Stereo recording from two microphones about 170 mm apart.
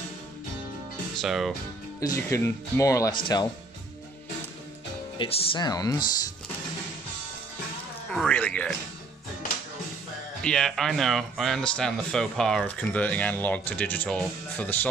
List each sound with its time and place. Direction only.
1.1 s speech: centre (ahead or behind)
2.0 s speech: 15° left (ahead or behind)
5.2 s speech: 30° left (ahead or behind)
8.1 s music: 5° left (ahead or behind)
10.4 s speech: 5° left (ahead or behind)